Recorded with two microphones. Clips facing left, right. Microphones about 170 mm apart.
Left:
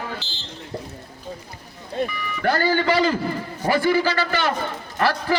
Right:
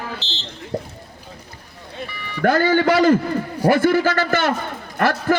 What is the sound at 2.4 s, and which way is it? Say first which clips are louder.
A man's voice: right 4 dB; 45° right (ahead or behind).